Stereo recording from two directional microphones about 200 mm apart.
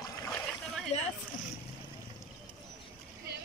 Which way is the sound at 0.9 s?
35° left (ahead or behind).